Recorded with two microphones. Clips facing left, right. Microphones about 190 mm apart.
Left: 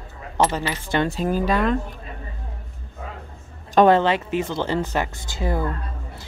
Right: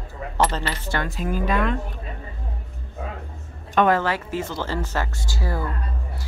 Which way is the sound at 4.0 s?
20° left (ahead or behind).